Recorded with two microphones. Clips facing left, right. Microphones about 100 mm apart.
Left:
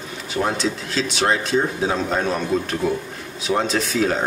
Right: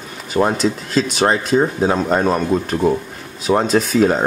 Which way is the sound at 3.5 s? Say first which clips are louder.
Right 6 dB; 45° right (ahead or behind).